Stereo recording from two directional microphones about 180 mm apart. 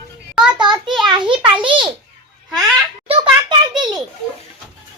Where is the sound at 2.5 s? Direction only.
Centre (ahead or behind).